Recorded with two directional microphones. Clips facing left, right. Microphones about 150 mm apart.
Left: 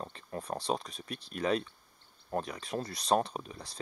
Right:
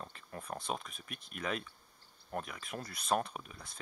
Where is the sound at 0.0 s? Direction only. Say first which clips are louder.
Left 6 dB; 30° left (ahead or behind).